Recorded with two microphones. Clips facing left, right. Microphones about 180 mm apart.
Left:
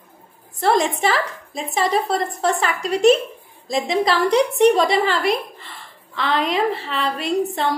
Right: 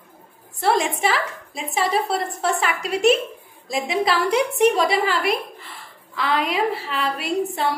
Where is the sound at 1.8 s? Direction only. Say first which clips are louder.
Left 2 dB; 5° right (ahead or behind).